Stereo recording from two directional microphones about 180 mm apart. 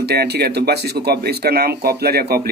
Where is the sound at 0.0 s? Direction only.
65° right (ahead or behind).